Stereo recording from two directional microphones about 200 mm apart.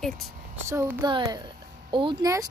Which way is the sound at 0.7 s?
15° right (ahead or behind).